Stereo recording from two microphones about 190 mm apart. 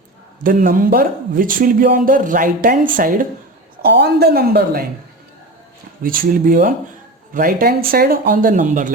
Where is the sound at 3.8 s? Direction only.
60° right (ahead or behind).